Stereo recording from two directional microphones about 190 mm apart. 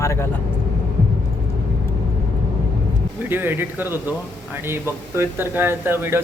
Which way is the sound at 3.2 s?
10° right (ahead or behind).